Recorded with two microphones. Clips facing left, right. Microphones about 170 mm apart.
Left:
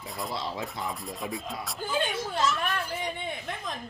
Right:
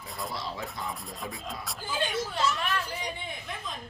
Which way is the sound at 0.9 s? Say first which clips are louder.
Left 3 dB; centre (ahead or behind).